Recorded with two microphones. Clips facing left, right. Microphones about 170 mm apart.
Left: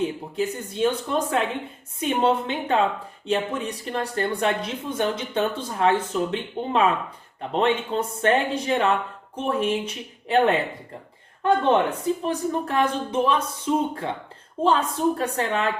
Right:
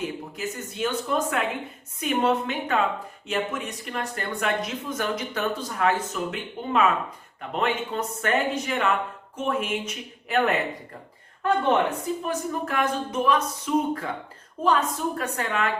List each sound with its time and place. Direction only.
0.0 s speech: 30° left (ahead or behind)
12.2 s speech: 30° left (ahead or behind)